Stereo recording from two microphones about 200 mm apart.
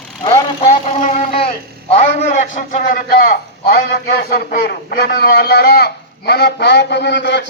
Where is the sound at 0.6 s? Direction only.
35° left (ahead or behind).